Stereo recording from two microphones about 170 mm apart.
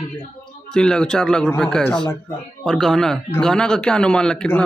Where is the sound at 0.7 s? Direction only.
5° left (ahead or behind).